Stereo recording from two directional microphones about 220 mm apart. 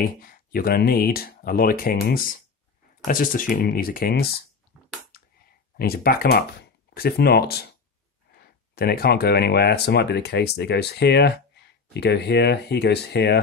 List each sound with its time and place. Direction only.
0.0 s speech: 40° left (ahead or behind)
5.8 s speech: 45° left (ahead or behind)